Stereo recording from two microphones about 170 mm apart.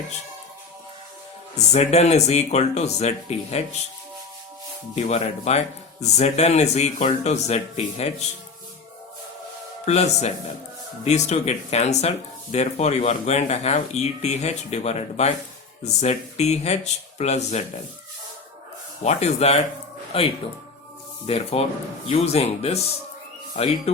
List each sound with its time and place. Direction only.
1.5 s speech: 40° left (ahead or behind)
4.9 s speech: 40° left (ahead or behind)
9.8 s speech: 40° left (ahead or behind)
19.0 s speech: 40° left (ahead or behind)